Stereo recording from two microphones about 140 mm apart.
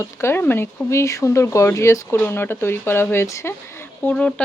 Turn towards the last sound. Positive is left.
turn(degrees=15)  # may be behind; listen again after turning